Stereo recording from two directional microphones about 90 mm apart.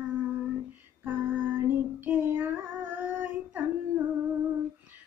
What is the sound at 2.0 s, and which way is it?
Child singing, 20° right (ahead or behind).